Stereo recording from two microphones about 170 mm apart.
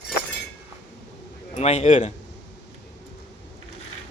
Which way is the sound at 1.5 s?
40° left (ahead or behind).